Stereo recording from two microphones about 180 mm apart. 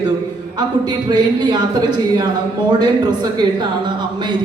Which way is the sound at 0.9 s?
25° right (ahead or behind).